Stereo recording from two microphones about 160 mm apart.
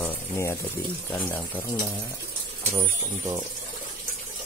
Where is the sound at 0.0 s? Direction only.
15° left (ahead or behind).